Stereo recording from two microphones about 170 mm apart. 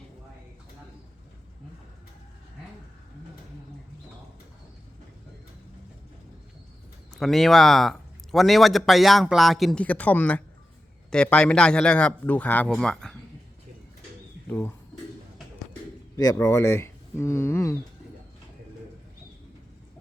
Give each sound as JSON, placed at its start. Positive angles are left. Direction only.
{"t": 7.2, "sound": "speech", "side_deg": 0}
{"t": 16.1, "sound": "speech", "side_deg": 20}